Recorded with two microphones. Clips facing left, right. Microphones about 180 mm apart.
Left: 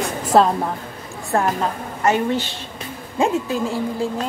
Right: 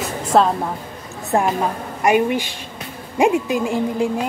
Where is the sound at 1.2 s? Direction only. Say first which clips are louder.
Right 2 dB; 15° right (ahead or behind).